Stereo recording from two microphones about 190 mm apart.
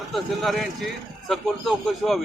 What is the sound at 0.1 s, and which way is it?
A man's voice, centre (ahead or behind).